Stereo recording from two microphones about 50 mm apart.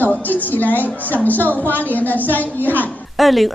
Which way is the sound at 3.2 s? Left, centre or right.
Centre.